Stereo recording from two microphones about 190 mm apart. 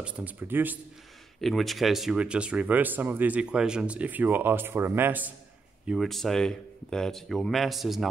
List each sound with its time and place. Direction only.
0.0 s speech: 10° right (ahead or behind)
1.4 s speech: centre (ahead or behind)
5.9 s speech: centre (ahead or behind)